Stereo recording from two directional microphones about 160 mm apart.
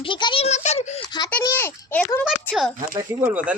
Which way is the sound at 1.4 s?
20° left (ahead or behind).